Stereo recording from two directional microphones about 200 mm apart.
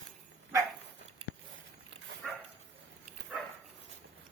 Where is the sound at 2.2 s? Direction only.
Centre (ahead or behind).